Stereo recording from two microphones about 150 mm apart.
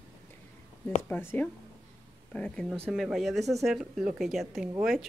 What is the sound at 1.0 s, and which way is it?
Speech, 10° left (ahead or behind).